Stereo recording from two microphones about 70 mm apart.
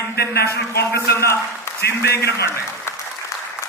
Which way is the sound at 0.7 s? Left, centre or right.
Left.